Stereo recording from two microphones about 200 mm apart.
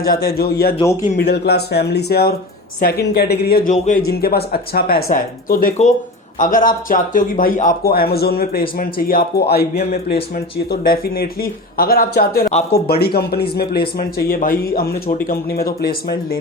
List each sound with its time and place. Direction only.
0.0 s speech: 50° left (ahead or behind)